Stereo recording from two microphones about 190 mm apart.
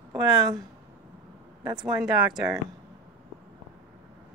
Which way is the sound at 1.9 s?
5° right (ahead or behind).